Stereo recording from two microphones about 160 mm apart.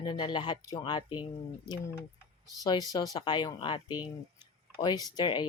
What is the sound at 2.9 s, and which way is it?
Speech, 25° left (ahead or behind).